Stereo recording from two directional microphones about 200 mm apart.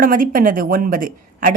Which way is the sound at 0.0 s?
45° right (ahead or behind).